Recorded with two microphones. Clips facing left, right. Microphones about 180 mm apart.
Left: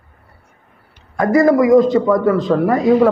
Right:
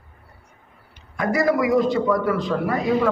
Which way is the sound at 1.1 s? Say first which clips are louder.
Left 8 dB; 50° left (ahead or behind).